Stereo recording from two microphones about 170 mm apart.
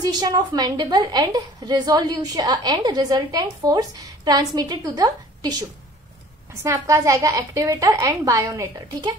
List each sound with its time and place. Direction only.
0.0 s a woman's voice: 25° right (ahead or behind)